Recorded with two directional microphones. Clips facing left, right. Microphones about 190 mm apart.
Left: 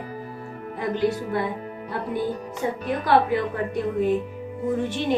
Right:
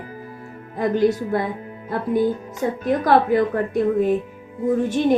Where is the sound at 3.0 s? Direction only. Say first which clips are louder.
Right 3 dB; 45° right (ahead or behind).